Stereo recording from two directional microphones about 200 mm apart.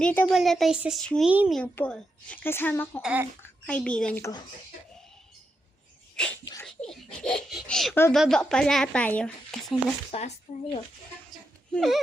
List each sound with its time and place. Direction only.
0.0 s a woman's voice: 5° left (ahead or behind)
1.5 s a woman's voice: 5° left (ahead or behind)
3.0 s speech: 5° right (ahead or behind)
3.7 s a woman's voice: 5° left (ahead or behind)
6.4 s a sound: 20° left (ahead or behind)
6.7 s speech: 5° left (ahead or behind)
10.1 s speech: 35° left (ahead or behind)
11.7 s speech: centre (ahead or behind)